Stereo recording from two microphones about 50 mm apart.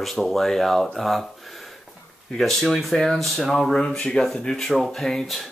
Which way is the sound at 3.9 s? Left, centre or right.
Left.